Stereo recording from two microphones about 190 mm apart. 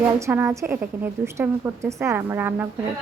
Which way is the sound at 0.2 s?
10° right (ahead or behind).